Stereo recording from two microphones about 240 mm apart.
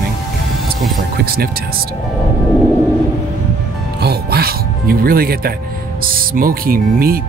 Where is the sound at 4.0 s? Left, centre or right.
Right.